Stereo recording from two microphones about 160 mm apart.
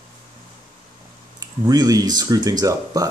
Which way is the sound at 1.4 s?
25° right (ahead or behind).